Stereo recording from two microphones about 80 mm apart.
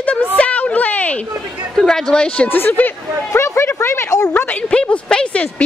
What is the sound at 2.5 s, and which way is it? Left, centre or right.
Speech, left.